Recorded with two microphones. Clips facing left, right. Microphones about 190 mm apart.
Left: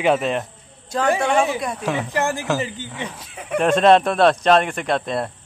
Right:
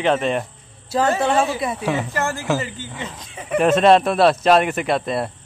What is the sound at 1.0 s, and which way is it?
Speech, 15° left (ahead or behind).